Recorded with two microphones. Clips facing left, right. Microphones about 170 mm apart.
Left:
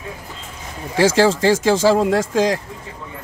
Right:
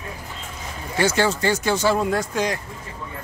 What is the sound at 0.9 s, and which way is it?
Speech, 90° left.